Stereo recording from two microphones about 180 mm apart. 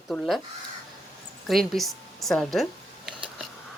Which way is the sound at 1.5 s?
Centre (ahead or behind).